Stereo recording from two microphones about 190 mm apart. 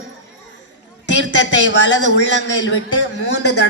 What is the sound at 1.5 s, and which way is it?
A man's voice, 70° left (ahead or behind).